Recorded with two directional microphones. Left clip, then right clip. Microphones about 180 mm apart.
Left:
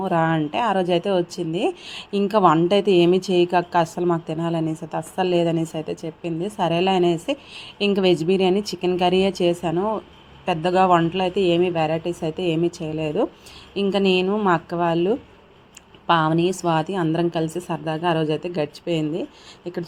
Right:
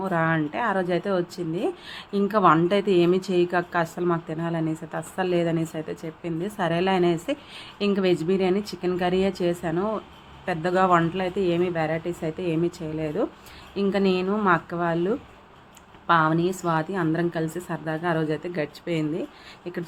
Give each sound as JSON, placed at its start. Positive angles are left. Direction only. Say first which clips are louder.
{"t": 0.0, "sound": "a woman's voice", "louder": "left 3 dB", "side_deg": 15}